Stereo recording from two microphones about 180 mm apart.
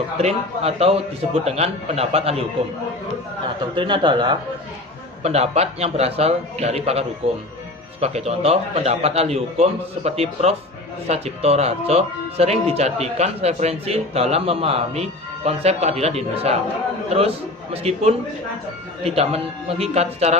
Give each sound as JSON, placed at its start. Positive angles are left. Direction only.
{"t": 0.2, "sound": "speech", "side_deg": -35}
{"t": 3.8, "sound": "speech", "side_deg": -25}
{"t": 5.2, "sound": "speech", "side_deg": -35}